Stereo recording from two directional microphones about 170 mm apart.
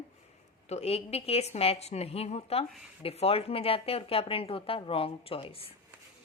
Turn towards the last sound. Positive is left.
turn(degrees=35)  # may be behind; listen again after turning